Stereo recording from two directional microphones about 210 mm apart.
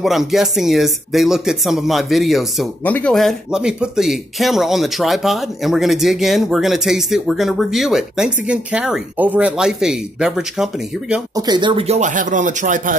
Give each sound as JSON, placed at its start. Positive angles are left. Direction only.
{"t": 0.0, "sound": "speech", "side_deg": 0}
{"t": 11.3, "sound": "speech", "side_deg": -20}